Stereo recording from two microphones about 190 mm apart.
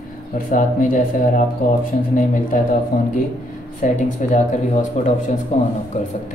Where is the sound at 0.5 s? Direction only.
45° left (ahead or behind).